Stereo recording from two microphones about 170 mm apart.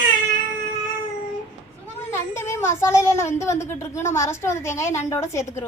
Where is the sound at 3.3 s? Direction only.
15° left (ahead or behind).